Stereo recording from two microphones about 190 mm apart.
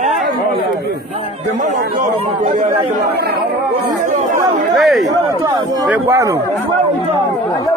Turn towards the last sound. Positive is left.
turn(degrees=-10)  # may be behind; listen again after turning